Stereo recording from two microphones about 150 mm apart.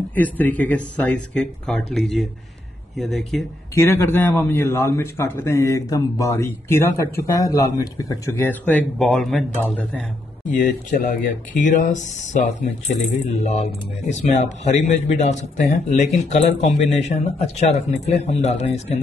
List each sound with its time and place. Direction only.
0.1 s a man's voice: 10° left (ahead or behind)
3.7 s a man's voice: 15° left (ahead or behind)
10.6 s speech: 60° left (ahead or behind)